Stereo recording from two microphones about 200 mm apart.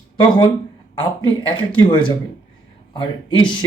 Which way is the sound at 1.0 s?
25° left (ahead or behind).